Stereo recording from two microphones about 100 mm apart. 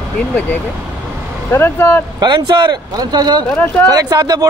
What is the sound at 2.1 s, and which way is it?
Speech, 50° right (ahead or behind).